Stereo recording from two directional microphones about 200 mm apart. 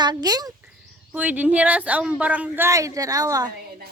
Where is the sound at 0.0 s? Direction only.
20° right (ahead or behind).